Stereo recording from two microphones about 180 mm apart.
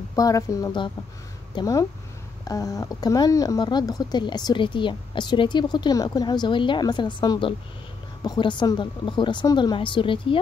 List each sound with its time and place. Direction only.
0.1 s speech: 20° left (ahead or behind)